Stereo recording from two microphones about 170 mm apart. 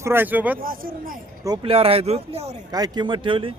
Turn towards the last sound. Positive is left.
turn(degrees=-30)  # may be behind; listen again after turning